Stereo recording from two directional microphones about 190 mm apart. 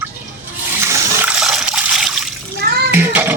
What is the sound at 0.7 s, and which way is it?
Water, 15° right (ahead or behind).